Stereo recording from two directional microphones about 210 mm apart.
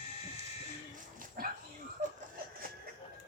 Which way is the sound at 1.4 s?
45° right (ahead or behind).